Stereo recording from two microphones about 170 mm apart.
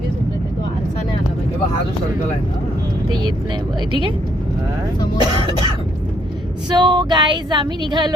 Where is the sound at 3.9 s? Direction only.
30° right (ahead or behind).